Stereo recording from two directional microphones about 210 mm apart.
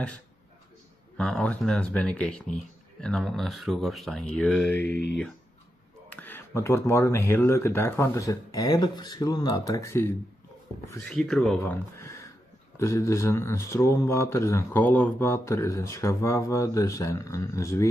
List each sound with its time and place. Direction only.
1.1 s speech: 5° left (ahead or behind)
4.7 s speech: 50° left (ahead or behind)
6.1 s speech: 10° left (ahead or behind)
11.1 s speech: centre (ahead or behind)